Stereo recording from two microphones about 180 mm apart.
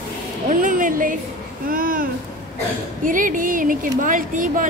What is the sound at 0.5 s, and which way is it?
A child's voice, 45° right (ahead or behind).